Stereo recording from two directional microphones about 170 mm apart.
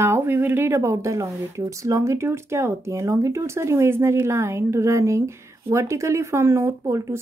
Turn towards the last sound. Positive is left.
turn(degrees=-15)  # may be behind; listen again after turning